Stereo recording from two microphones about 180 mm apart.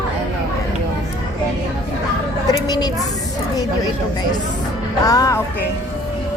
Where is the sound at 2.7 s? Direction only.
20° left (ahead or behind).